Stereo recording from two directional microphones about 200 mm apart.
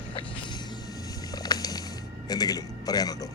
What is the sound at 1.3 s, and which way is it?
Patter, 20° left (ahead or behind).